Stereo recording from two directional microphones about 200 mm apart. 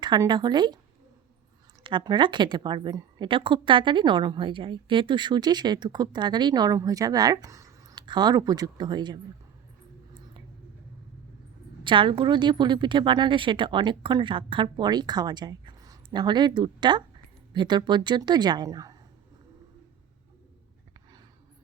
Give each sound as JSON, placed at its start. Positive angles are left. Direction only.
{"t": 0.0, "sound": "a woman's voice", "side_deg": -20}
{"t": 1.8, "sound": "a woman's voice", "side_deg": -25}
{"t": 11.8, "sound": "a woman's voice", "side_deg": -25}